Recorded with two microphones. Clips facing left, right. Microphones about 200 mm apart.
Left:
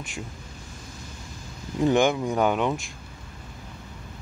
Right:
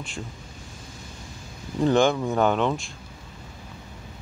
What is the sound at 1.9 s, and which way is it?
Speech, 15° left (ahead or behind).